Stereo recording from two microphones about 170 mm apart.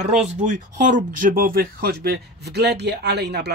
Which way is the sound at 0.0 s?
45° right (ahead or behind).